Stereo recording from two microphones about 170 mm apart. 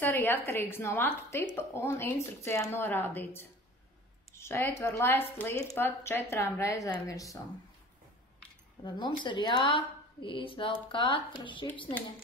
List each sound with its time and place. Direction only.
0.0 s a woman's voice: 10° left (ahead or behind)
8.8 s speech: 25° left (ahead or behind)